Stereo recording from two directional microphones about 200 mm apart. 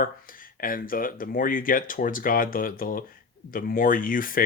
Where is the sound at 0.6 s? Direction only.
45° left (ahead or behind).